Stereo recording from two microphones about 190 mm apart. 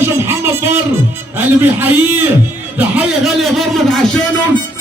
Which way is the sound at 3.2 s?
Centre (ahead or behind).